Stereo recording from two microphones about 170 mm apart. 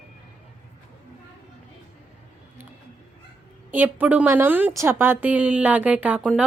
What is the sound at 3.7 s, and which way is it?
A woman's voice, 10° right (ahead or behind).